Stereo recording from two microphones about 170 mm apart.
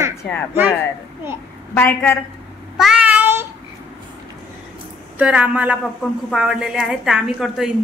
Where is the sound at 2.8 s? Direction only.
5° right (ahead or behind).